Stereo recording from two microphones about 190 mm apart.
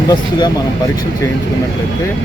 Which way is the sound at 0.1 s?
20° left (ahead or behind).